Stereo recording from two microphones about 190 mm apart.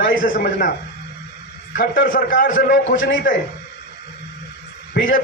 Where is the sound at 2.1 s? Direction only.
45° left (ahead or behind).